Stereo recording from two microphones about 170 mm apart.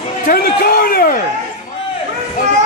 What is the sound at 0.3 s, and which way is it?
Speech, 60° left (ahead or behind).